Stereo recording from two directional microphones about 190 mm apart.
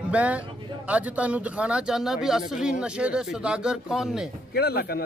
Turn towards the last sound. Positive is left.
turn(degrees=55)  # may be behind; listen again after turning